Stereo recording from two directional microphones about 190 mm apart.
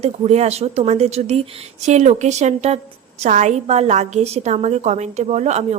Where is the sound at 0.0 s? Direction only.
35° right (ahead or behind).